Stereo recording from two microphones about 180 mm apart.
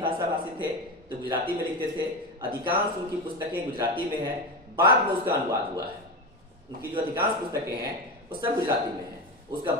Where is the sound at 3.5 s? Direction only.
25° right (ahead or behind).